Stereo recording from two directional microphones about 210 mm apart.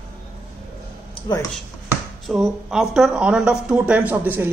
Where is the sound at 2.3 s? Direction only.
Centre (ahead or behind).